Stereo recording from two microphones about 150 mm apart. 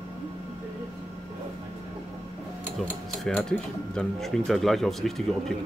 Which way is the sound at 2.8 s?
5° left (ahead or behind).